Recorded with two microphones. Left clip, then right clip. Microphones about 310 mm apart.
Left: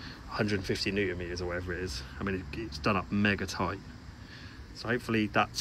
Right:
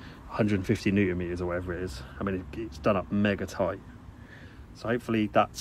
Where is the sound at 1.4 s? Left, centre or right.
Right.